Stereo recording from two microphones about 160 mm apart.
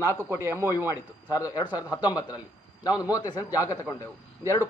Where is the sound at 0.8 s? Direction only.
20° left (ahead or behind).